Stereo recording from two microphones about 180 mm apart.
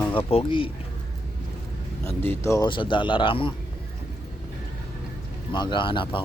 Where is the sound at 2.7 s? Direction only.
25° left (ahead or behind).